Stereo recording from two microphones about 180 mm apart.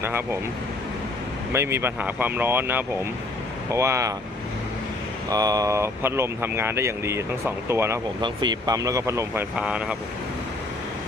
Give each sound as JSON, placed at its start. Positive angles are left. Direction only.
{"t": 1.5, "sound": "speech", "side_deg": -15}
{"t": 5.3, "sound": "speech", "side_deg": -20}
{"t": 8.2, "sound": "speech", "side_deg": -25}